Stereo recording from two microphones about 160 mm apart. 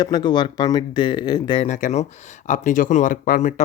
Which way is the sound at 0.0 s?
25° left (ahead or behind).